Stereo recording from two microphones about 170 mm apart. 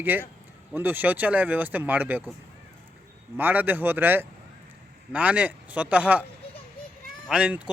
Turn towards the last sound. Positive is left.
turn(degrees=-5)  # may be behind; listen again after turning